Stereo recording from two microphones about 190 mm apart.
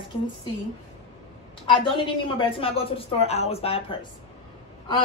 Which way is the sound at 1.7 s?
25° left (ahead or behind).